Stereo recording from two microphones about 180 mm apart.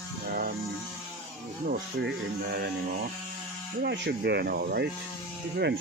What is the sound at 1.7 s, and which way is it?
Speech, 65° right (ahead or behind).